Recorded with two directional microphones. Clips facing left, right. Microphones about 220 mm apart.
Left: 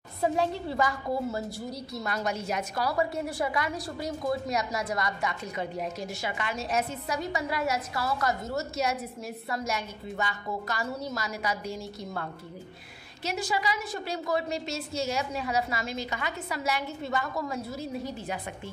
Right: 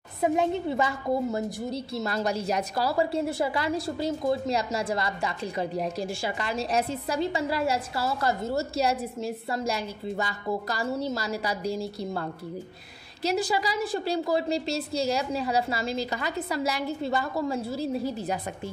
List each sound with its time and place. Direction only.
0.2 s a woman's voice: 20° right (ahead or behind)